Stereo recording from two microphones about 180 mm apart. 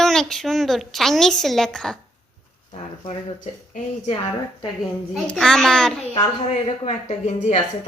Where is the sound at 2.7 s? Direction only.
40° left (ahead or behind).